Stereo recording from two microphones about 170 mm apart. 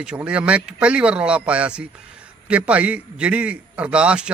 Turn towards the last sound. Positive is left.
turn(degrees=-5)  # may be behind; listen again after turning